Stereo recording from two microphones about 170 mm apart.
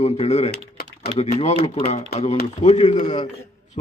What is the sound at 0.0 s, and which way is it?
Speech, 40° left (ahead or behind).